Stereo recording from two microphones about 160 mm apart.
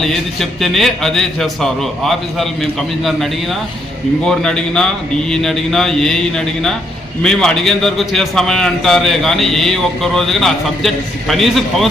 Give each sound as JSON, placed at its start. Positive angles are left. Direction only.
{"t": 0.0, "sound": "a man's voice", "side_deg": 0}
{"t": 4.2, "sound": "a man's voice", "side_deg": 5}